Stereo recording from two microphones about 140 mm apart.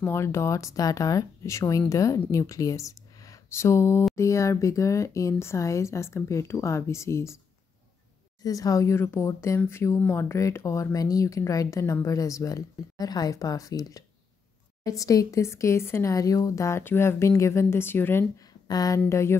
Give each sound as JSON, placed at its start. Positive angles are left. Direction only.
{"t": 0.0, "sound": "speech", "side_deg": 20}
{"t": 8.4, "sound": "speech", "side_deg": 25}
{"t": 18.7, "sound": "speech", "side_deg": 25}